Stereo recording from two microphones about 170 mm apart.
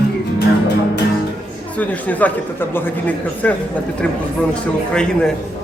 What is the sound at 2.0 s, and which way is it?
A man's voice, 10° left (ahead or behind).